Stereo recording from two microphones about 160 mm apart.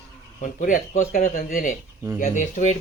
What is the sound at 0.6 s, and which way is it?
Speech, 55° left (ahead or behind).